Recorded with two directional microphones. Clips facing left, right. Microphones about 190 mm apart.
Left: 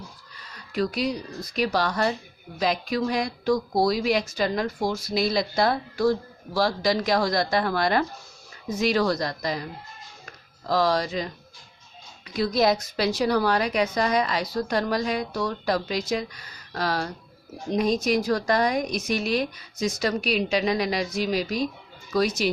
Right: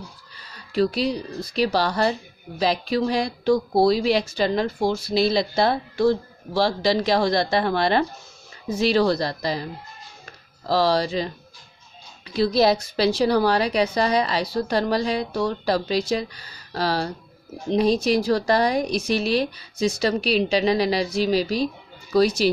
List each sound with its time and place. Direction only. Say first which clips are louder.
0.4 s speech: right 5 dB; 30° right (ahead or behind)
10.7 s a woman's voice: right 3 dB; 30° right (ahead or behind)